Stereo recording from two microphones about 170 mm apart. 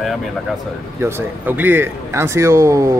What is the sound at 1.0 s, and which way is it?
Speech, 15° right (ahead or behind).